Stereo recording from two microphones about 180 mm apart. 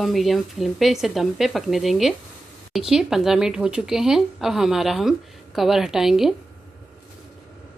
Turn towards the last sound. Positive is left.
turn(degrees=0)  # may be behind; listen again after turning